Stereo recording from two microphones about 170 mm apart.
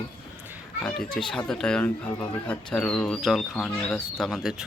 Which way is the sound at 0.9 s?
5° left (ahead or behind).